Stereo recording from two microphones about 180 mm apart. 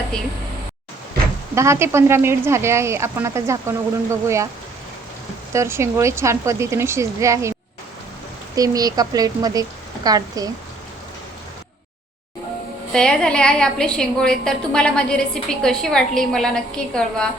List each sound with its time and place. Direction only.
1.5 s speech: 15° right (ahead or behind)
5.5 s speech: 15° right (ahead or behind)
8.5 s a woman's voice: 20° right (ahead or behind)
12.9 s a woman's voice: 5° left (ahead or behind)